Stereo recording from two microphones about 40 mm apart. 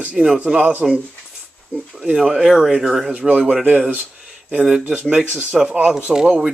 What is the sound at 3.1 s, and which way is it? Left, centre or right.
Speech, right.